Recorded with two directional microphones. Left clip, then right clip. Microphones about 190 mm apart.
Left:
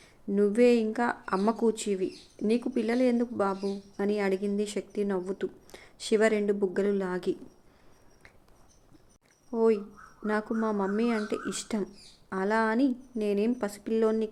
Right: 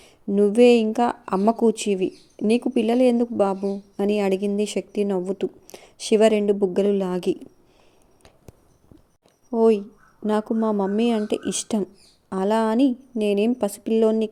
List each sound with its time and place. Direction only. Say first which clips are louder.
0.0 s speech: right 7 dB; 30° right (ahead or behind)
9.6 s speech: right 7 dB; 35° right (ahead or behind)